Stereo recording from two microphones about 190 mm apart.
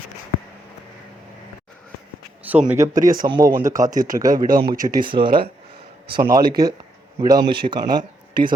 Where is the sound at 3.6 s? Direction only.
45° right (ahead or behind).